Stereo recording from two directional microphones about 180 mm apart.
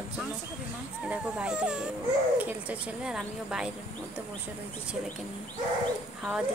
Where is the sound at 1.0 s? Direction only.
5° right (ahead or behind).